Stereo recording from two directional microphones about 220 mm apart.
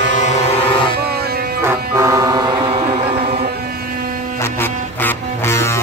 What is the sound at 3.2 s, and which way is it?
Ship, 45° right (ahead or behind).